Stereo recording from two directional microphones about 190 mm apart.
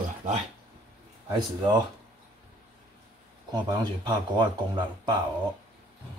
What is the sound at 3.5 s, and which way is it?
Speech, 20° right (ahead or behind).